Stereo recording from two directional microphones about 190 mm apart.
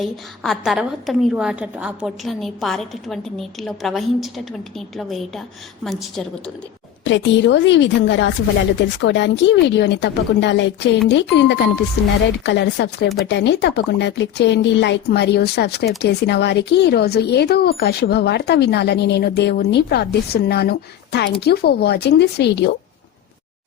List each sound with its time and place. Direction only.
0.0 s a woman's voice: centre (ahead or behind)
7.0 s a woman's voice: 70° left (ahead or behind)